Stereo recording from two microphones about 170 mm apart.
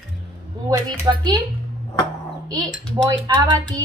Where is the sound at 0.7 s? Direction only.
25° right (ahead or behind).